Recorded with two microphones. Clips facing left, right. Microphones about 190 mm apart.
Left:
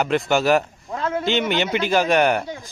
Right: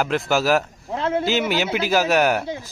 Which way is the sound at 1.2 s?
5° right (ahead or behind).